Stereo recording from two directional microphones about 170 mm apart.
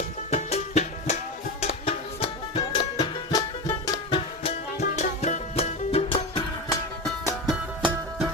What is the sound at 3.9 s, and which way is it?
Music, 30° left (ahead or behind).